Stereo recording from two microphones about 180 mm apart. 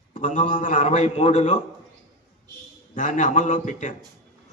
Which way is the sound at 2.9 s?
45° left (ahead or behind).